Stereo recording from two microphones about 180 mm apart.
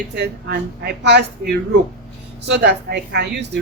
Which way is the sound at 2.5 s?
70° right (ahead or behind).